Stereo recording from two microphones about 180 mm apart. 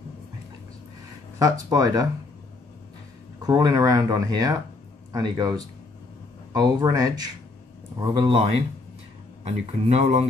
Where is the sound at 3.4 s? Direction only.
20° right (ahead or behind).